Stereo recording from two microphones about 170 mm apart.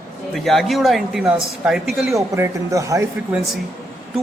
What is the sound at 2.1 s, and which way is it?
Speech, 20° right (ahead or behind).